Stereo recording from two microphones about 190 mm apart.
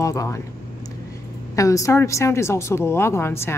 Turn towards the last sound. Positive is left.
turn(degrees=15)  # may be behind; listen again after turning